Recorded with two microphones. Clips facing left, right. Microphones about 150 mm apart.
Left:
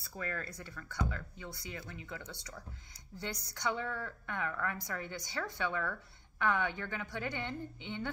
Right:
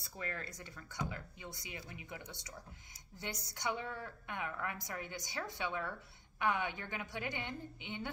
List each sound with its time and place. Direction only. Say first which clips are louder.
0.2 s a woman's voice: left 3 dB; 20° right (ahead or behind)